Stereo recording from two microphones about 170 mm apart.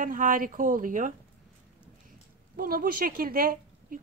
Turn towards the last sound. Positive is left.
turn(degrees=-60)  # may be behind; listen again after turning